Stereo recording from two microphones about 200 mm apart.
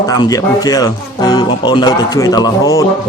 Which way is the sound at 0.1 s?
20° left (ahead or behind).